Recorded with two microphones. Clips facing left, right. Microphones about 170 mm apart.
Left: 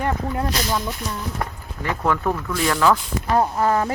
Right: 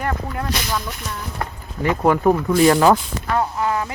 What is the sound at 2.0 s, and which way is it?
Speech, 25° right (ahead or behind).